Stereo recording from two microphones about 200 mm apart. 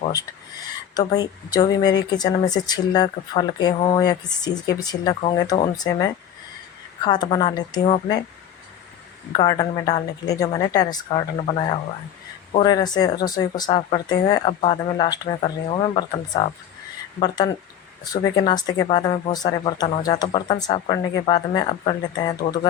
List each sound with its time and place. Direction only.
0.9 s speech: 20° left (ahead or behind)
9.3 s speech: 20° left (ahead or behind)